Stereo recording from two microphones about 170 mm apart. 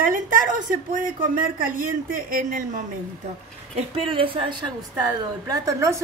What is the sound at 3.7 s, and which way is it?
Speech, 35° right (ahead or behind).